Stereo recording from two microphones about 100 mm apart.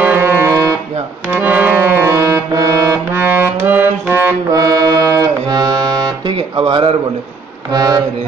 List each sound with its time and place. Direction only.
0.0 s a sound: 20° right (ahead or behind)
1.3 s music: 20° right (ahead or behind)
4.5 s accordion: 35° right (ahead or behind)
6.2 s speech: 60° right (ahead or behind)
7.7 s music: 40° right (ahead or behind)